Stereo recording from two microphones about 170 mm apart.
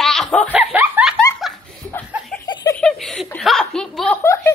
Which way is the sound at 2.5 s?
25° left (ahead or behind).